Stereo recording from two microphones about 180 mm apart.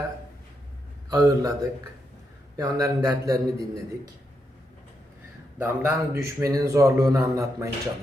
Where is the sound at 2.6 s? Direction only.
20° right (ahead or behind).